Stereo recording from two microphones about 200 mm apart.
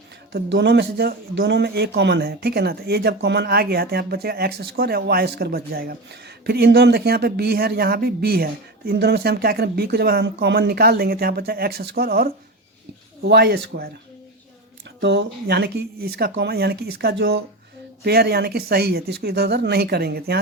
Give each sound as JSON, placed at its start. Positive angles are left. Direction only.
{"t": 0.3, "sound": "speech", "side_deg": -60}
{"t": 15.0, "sound": "speech", "side_deg": -60}